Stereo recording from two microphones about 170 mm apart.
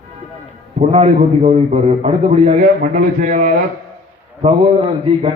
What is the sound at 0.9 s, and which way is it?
A man's voice, 40° right (ahead or behind).